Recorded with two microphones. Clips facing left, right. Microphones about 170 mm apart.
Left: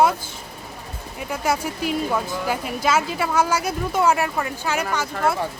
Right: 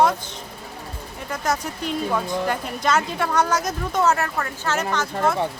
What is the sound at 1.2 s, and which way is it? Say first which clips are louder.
Speech: left 2 dB; 10° left (ahead or behind).